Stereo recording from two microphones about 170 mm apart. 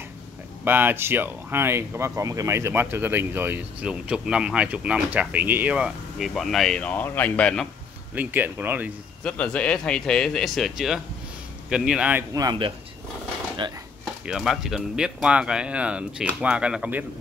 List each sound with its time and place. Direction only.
0.7 s speech: 10° right (ahead or behind); by 7.6 s 5° left (ahead or behind)
8.1 s speech: 10° right (ahead or behind)
9.2 s speech: 5° left (ahead or behind)
12.4 s speech: 25° right (ahead or behind)
14.2 s speech: centre (ahead or behind)